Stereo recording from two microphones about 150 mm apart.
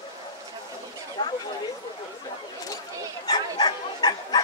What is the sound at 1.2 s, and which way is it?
Chatter, 30° left (ahead or behind).